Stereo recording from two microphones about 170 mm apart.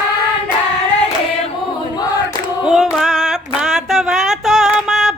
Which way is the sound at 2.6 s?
5° right (ahead or behind).